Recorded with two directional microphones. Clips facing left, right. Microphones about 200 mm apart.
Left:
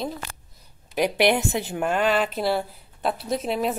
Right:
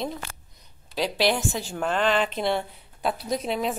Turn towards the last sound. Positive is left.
turn(degrees=5)  # may be behind; listen again after turning